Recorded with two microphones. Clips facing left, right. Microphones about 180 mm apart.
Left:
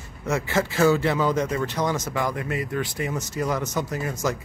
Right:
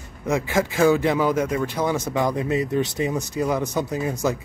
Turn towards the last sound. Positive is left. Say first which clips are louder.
# right 3 dB
turn(degrees=-15)  # may be behind; listen again after turning